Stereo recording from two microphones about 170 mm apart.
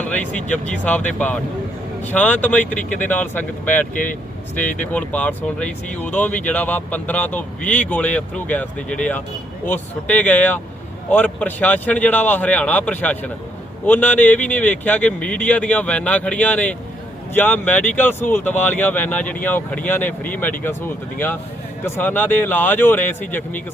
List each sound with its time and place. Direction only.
0.7 s speech: 10° left (ahead or behind)
2.6 s speech: 50° left (ahead or behind)
3.0 s speech: 10° left (ahead or behind)